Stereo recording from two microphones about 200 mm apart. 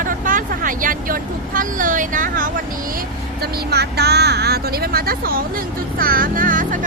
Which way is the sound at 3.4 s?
55° right (ahead or behind).